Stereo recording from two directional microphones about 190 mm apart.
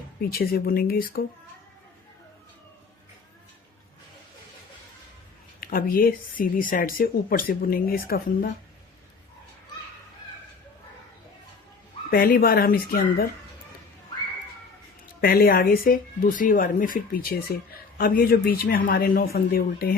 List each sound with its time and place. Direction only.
0.2 s speech: 55° left (ahead or behind)
5.5 s speech: 50° left (ahead or behind)
12.1 s speech: 50° left (ahead or behind)
15.2 s speech: 50° left (ahead or behind)